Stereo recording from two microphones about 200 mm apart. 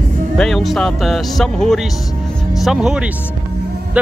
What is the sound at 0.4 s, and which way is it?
Speech, centre (ahead or behind).